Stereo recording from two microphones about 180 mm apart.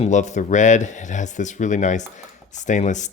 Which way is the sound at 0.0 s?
40° left (ahead or behind).